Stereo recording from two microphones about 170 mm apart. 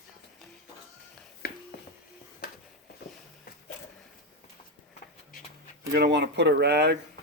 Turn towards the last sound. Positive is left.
turn(degrees=-75)  # may be behind; listen again after turning